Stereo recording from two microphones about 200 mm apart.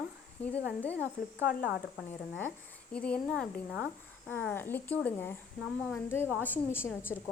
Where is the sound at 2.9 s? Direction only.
5° left (ahead or behind).